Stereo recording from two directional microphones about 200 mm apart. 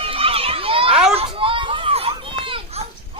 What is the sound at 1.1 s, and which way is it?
Children playing, 25° right (ahead or behind).